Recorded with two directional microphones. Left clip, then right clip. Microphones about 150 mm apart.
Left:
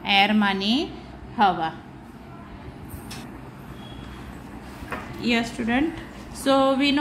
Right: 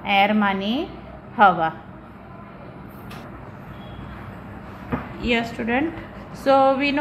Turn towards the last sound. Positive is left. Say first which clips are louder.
# right 3 dB
turn(degrees=20)  # may be behind; listen again after turning